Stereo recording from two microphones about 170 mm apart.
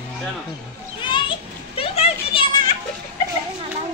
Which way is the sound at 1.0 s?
30° left (ahead or behind).